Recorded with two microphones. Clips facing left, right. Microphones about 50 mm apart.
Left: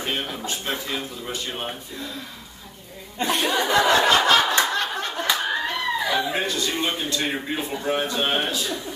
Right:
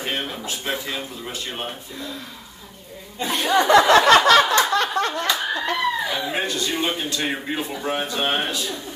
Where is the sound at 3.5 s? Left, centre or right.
Right.